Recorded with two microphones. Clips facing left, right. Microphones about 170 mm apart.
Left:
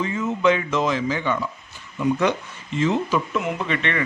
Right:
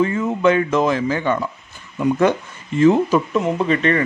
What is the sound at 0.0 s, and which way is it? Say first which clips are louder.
Speech: right 4 dB; 55° right (ahead or behind).